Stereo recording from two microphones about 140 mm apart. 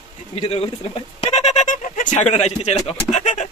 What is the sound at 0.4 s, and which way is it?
Speech, 45° left (ahead or behind).